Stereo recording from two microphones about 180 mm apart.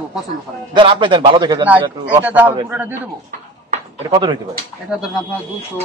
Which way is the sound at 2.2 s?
10° right (ahead or behind).